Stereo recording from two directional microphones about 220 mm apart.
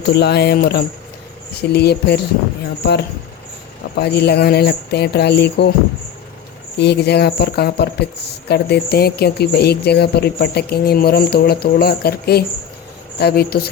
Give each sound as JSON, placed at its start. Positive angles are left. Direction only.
{"t": 0.1, "sound": "speech", "side_deg": 50}
{"t": 3.9, "sound": "speech", "side_deg": 50}
{"t": 6.7, "sound": "speech", "side_deg": 50}